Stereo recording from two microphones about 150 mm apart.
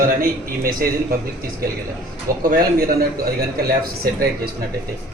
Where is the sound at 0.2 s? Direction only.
75° right (ahead or behind).